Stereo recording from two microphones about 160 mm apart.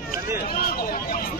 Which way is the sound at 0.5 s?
60° left (ahead or behind).